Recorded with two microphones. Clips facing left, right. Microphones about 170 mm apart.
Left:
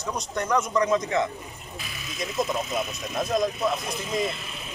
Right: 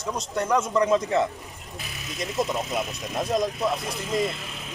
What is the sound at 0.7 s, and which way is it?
Speech, 5° right (ahead or behind).